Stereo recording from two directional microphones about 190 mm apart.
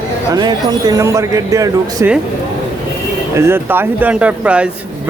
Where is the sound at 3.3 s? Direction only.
10° right (ahead or behind).